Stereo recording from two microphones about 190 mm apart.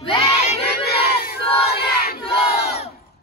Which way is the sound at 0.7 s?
55° left (ahead or behind).